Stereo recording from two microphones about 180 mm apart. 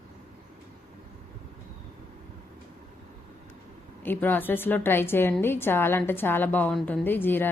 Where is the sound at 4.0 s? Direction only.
10° left (ahead or behind).